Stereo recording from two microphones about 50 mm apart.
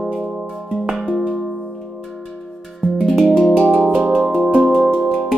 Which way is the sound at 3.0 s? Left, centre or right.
Centre.